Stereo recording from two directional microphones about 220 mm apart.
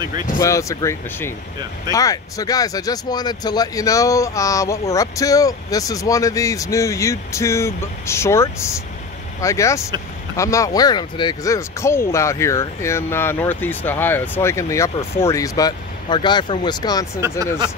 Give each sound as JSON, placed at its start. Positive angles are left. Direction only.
{"t": 0.4, "sound": "speech", "side_deg": 15}
{"t": 17.2, "sound": "speech", "side_deg": -15}